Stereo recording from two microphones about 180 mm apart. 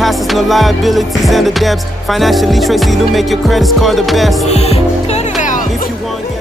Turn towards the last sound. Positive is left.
turn(degrees=45)  # may be behind; listen again after turning